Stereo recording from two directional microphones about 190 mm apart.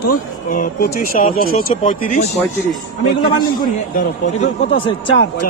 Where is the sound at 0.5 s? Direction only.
50° left (ahead or behind).